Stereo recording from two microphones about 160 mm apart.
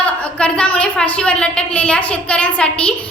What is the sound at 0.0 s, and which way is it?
A woman's voice, 5° left (ahead or behind).